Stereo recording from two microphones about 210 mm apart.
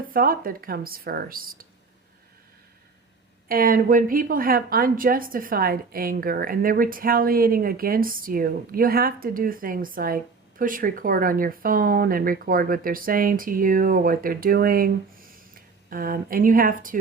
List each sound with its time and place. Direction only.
0.1 s a woman's voice: 45° right (ahead or behind)
3.5 s a woman's voice: 45° right (ahead or behind)